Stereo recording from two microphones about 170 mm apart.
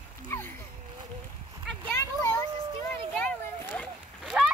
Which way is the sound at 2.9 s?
5° left (ahead or behind).